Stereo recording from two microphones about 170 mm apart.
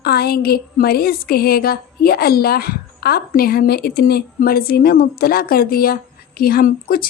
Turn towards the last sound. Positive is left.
turn(degrees=60)  # may be behind; listen again after turning